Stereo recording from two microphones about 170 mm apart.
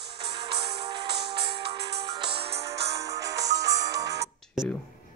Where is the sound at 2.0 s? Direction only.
25° right (ahead or behind).